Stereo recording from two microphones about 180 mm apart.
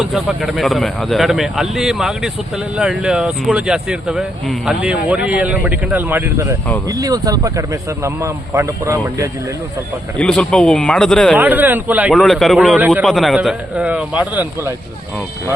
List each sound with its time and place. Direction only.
0.0 s speech: 5° right (ahead or behind)
10.2 s speech: 5° left (ahead or behind)
11.3 s speech: 10° right (ahead or behind)
12.1 s speech: centre (ahead or behind)